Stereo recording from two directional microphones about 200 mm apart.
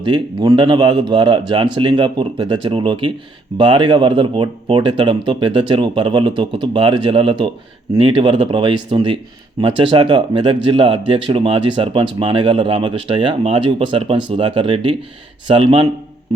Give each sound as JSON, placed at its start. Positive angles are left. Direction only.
{"t": 0.0, "sound": "speech", "side_deg": -25}